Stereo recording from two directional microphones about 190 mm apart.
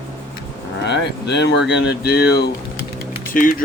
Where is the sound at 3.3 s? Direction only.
45° left (ahead or behind).